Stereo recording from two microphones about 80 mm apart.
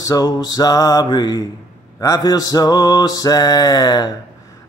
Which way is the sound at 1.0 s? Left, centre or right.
Left.